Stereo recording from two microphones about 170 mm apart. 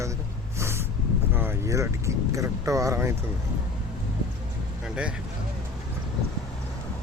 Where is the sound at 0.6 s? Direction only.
15° right (ahead or behind).